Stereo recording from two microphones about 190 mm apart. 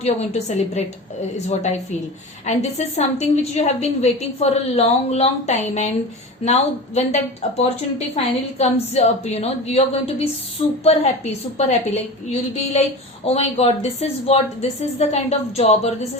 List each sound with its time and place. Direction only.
0.0 s a woman's voice: 35° left (ahead or behind)